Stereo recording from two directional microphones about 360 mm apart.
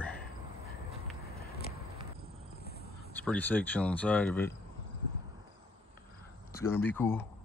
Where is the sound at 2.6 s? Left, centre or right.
Left.